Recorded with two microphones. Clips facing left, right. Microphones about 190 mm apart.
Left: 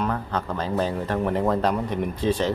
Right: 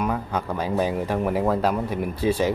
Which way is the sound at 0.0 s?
10° right (ahead or behind).